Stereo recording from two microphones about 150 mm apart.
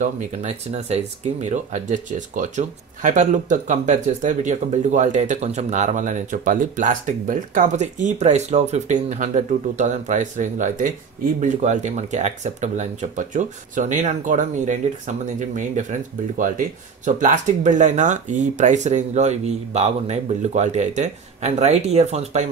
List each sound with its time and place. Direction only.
0.0 s speech: 50° right (ahead or behind)